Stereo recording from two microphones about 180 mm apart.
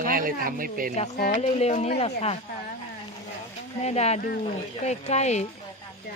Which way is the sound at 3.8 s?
35° left (ahead or behind).